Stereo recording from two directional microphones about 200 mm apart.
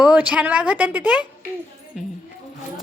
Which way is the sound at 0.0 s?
5° right (ahead or behind).